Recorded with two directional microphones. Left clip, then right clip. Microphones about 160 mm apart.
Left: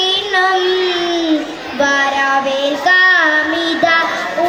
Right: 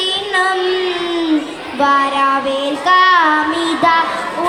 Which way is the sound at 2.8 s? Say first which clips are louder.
Right 1 dB; 40° right (ahead or behind).